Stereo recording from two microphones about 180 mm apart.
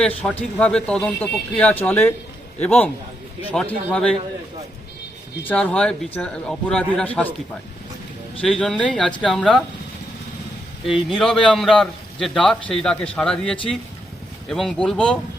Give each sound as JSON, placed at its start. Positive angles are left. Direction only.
{"t": 0.0, "sound": "speech", "side_deg": 5}
{"t": 5.4, "sound": "a man's voice", "side_deg": 10}
{"t": 8.4, "sound": "a man's voice", "side_deg": 5}
{"t": 10.8, "sound": "a man's voice", "side_deg": 0}